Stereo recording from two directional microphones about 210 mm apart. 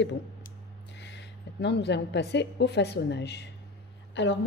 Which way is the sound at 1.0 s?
55° left (ahead or behind).